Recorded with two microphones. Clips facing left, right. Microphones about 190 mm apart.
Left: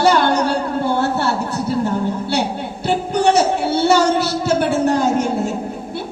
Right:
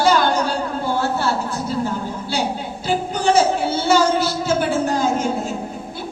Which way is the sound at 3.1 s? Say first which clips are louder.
Left 2 dB; 70° left (ahead or behind).